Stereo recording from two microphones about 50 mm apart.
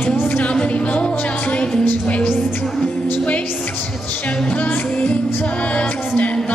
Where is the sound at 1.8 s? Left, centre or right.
Left.